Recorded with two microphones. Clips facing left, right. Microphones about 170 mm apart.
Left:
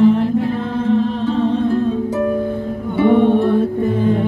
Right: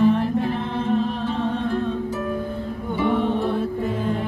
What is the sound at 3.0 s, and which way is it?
Music, 60° left (ahead or behind).